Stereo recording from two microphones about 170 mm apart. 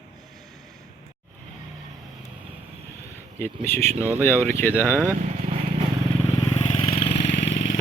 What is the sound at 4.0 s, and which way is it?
Speech, 10° right (ahead or behind).